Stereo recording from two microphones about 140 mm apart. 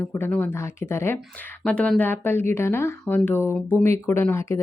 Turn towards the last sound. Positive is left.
turn(degrees=20)  # may be behind; listen again after turning